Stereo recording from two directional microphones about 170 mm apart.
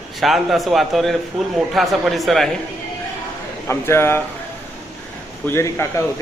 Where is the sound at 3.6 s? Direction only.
15° left (ahead or behind).